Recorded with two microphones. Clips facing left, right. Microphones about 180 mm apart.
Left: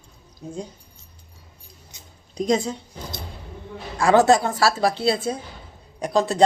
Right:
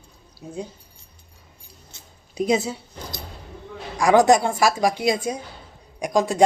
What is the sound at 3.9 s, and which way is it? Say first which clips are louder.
Speech: right 1 dB; 15° right (ahead or behind).